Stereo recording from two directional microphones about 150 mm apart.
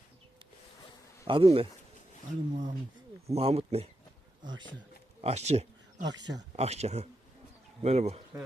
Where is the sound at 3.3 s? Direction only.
40° right (ahead or behind).